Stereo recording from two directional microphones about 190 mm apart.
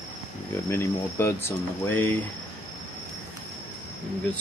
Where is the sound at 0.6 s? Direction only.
15° left (ahead or behind).